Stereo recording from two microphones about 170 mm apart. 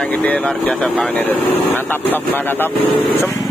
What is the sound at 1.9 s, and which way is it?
Speech, 10° left (ahead or behind).